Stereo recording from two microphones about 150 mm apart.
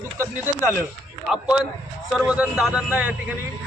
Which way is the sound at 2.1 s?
5° right (ahead or behind).